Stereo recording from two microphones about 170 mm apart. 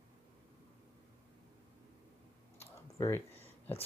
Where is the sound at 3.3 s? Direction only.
35° left (ahead or behind).